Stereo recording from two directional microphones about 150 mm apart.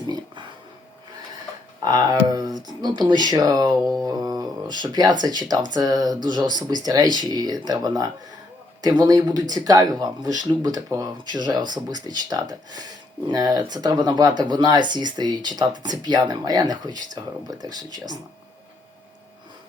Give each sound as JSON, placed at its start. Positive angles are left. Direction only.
{"t": 1.8, "sound": "speech", "side_deg": -25}